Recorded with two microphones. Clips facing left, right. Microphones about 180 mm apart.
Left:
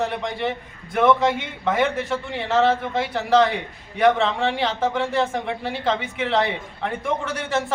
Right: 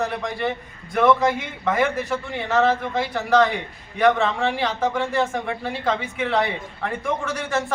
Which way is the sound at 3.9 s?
Centre (ahead or behind).